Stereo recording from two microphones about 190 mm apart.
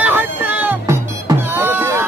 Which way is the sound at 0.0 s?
10° right (ahead or behind).